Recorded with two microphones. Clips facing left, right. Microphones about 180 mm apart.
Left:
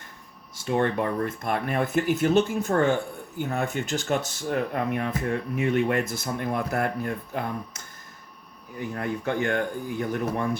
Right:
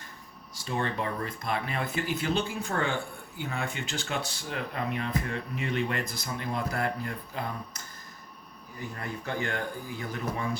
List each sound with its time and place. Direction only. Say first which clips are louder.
0.6 s speech: left 7 dB; 55° left (ahead or behind)
8.8 s speech: left 8 dB; 60° left (ahead or behind)